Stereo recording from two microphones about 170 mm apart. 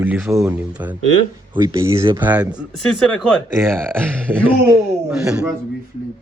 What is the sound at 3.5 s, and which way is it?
A man's voice, 15° right (ahead or behind).